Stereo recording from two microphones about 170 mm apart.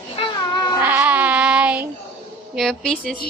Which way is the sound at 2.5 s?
Centre (ahead or behind).